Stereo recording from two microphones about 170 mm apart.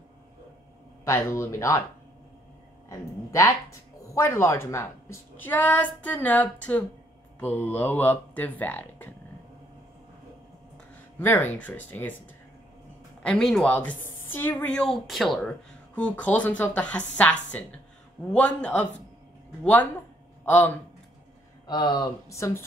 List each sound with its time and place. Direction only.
1.0 s a woman's voice: 15° left (ahead or behind)
2.9 s a woman's voice: 20° left (ahead or behind)
11.1 s a woman's voice: 10° left (ahead or behind)
13.2 s a woman's voice: 5° left (ahead or behind)
21.6 s speech: 25° left (ahead or behind)